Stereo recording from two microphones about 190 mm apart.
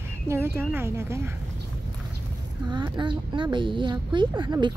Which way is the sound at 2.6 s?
25° right (ahead or behind).